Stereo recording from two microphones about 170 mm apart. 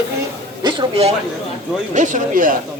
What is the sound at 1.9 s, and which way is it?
Speech, 45° right (ahead or behind).